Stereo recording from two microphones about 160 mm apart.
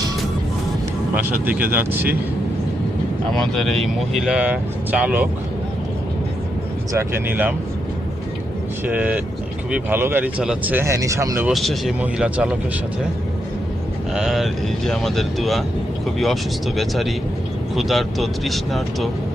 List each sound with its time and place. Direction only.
1.1 s speech: 10° right (ahead or behind)
3.5 s speech: centre (ahead or behind)
6.9 s speech: 15° right (ahead or behind)
8.9 s speech: 10° right (ahead or behind)
11.4 s speech: centre (ahead or behind)
14.1 s speech: centre (ahead or behind)